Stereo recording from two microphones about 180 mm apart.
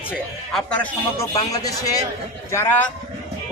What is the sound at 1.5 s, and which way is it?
A man's voice, 20° left (ahead or behind).